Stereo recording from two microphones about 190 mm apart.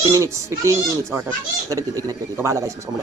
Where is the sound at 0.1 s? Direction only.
15° right (ahead or behind).